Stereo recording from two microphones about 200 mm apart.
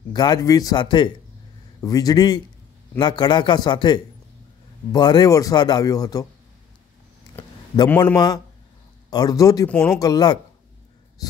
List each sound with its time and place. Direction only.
0.1 s speech: 20° left (ahead or behind)
7.4 s a sound: 10° left (ahead or behind)
7.9 s speech: 10° left (ahead or behind)